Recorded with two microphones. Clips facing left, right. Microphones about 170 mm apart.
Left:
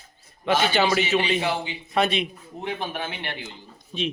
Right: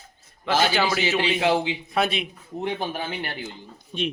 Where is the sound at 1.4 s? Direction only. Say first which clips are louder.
Right 5 dB; 90° right.